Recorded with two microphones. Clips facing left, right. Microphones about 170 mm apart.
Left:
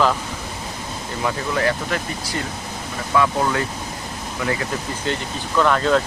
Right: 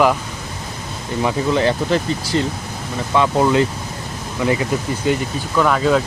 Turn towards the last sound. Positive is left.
turn(degrees=-5)  # may be behind; listen again after turning